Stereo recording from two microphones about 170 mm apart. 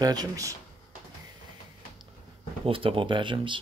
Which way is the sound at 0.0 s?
20° right (ahead or behind).